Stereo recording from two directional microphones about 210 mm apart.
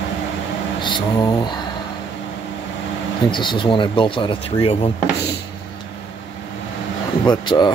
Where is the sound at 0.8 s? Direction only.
20° left (ahead or behind).